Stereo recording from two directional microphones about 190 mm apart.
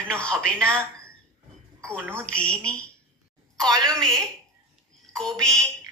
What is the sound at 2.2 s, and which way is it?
Speech, 5° left (ahead or behind).